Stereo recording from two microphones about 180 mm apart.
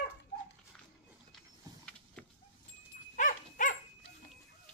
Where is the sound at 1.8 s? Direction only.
5° left (ahead or behind).